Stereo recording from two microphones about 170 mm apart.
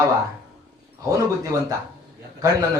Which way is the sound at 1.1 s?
20° right (ahead or behind).